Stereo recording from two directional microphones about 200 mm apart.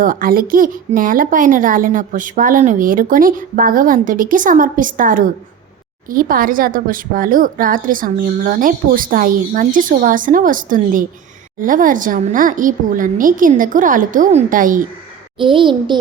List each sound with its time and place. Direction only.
0.0 s speech: 45° right (ahead or behind)
15.4 s a child's voice: 25° right (ahead or behind)